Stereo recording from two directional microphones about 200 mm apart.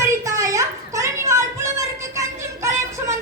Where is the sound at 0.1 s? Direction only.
15° right (ahead or behind).